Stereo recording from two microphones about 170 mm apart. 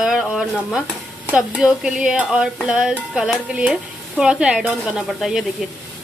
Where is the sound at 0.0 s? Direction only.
Centre (ahead or behind).